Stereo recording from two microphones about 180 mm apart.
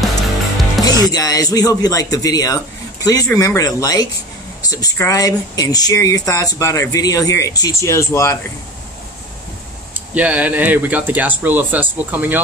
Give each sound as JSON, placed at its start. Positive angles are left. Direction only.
{"t": 0.8, "sound": "speech", "side_deg": 20}
{"t": 9.9, "sound": "speech", "side_deg": -10}